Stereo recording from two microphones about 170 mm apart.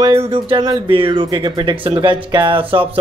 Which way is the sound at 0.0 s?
35° right (ahead or behind).